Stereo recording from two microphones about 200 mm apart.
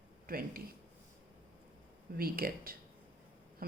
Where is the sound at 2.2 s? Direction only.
45° right (ahead or behind).